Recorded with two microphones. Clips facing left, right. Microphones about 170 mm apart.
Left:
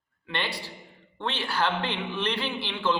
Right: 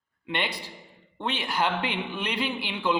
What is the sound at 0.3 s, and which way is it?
A man's voice, 15° right (ahead or behind).